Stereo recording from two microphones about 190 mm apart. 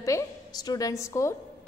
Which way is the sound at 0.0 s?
20° left (ahead or behind).